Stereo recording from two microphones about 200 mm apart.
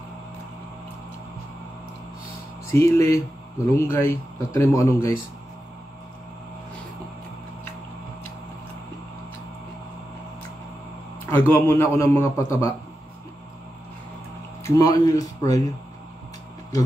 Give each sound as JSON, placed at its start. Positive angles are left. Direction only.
{"t": 2.7, "sound": "a man's voice", "side_deg": 15}
{"t": 11.2, "sound": "a man's voice", "side_deg": 10}
{"t": 14.6, "sound": "a man's voice", "side_deg": 15}